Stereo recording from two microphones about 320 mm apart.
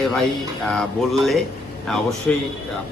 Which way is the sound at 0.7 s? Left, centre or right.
Centre.